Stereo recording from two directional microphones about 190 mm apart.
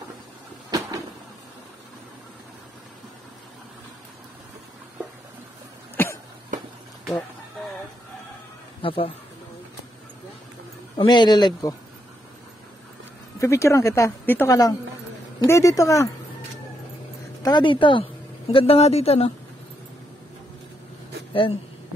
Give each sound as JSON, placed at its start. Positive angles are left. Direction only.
{"t": 0.7, "sound": "a sound", "side_deg": -20}
{"t": 6.0, "sound": "cough", "side_deg": 10}
{"t": 8.8, "sound": "speech", "side_deg": 30}
{"t": 11.0, "sound": "speech", "side_deg": 25}
{"t": 13.4, "sound": "a woman's voice", "side_deg": 15}
{"t": 17.4, "sound": "speech", "side_deg": 20}
{"t": 21.3, "sound": "speech", "side_deg": 25}